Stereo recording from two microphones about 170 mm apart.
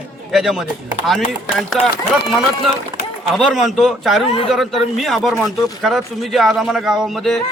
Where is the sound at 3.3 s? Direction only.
Centre (ahead or behind).